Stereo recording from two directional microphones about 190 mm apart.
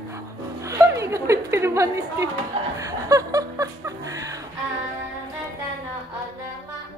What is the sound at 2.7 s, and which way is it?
Chuckle, 15° right (ahead or behind).